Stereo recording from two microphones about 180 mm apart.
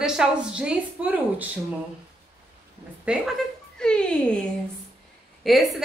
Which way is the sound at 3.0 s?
5° right (ahead or behind).